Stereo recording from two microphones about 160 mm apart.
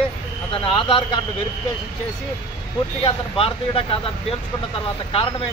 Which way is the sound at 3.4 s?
35° left (ahead or behind).